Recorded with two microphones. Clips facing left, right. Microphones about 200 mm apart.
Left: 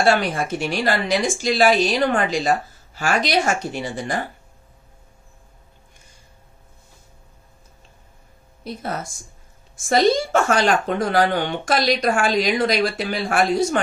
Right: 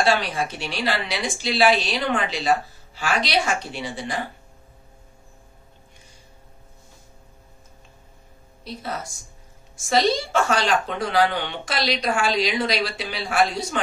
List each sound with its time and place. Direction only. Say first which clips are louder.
0.0 s speech: left 3 dB; 50° left (ahead or behind)
9.8 s speech: left 4 dB; 50° left (ahead or behind)